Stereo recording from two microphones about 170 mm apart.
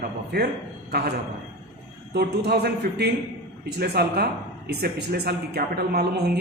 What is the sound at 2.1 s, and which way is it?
Speech, 75° right (ahead or behind).